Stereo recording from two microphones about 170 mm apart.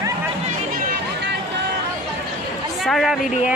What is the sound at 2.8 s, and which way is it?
Speech, centre (ahead or behind).